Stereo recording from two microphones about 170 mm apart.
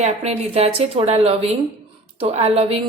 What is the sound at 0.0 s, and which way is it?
Speech, 40° right (ahead or behind).